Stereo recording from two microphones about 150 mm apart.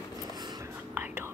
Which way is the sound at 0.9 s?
15° right (ahead or behind).